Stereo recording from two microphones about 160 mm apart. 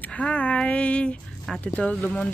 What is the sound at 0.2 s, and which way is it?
A woman's voice, 10° left (ahead or behind).